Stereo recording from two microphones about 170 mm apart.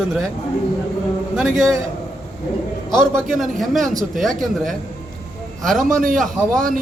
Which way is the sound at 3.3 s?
Centre (ahead or behind).